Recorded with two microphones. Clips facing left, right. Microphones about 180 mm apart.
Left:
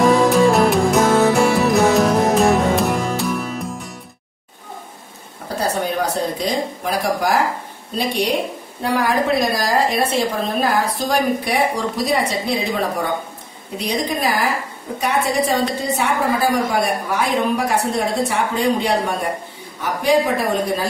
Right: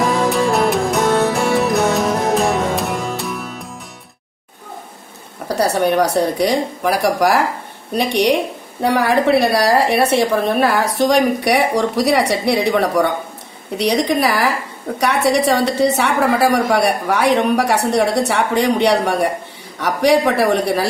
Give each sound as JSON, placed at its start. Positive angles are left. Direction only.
{"t": 0.0, "sound": "music", "side_deg": 0}
{"t": 5.5, "sound": "a woman's voice", "side_deg": -75}